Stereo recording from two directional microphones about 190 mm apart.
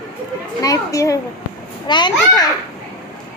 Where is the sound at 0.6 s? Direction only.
20° left (ahead or behind).